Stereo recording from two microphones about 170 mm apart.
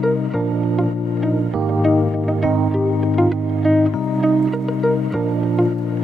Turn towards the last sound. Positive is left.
turn(degrees=0)  # may be behind; listen again after turning